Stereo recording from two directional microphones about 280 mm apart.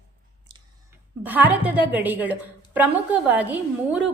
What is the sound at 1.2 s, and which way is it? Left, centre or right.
A woman's voice, centre.